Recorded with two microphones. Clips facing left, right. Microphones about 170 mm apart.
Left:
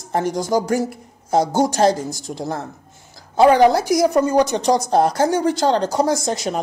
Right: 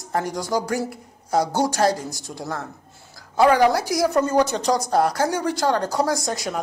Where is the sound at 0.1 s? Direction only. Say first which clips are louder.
Left 4 dB; 20° left (ahead or behind).